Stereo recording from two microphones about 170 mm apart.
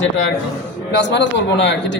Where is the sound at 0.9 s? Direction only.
90° left.